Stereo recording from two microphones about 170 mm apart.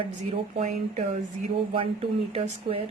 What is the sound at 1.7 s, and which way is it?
A woman's voice, 35° right (ahead or behind).